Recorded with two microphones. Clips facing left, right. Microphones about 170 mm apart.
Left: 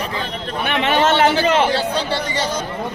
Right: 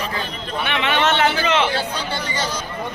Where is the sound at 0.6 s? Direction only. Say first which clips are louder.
Left 3 dB; 40° left (ahead or behind).